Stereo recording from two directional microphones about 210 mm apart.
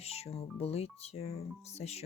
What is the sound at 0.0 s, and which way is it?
Speech, 30° left (ahead or behind).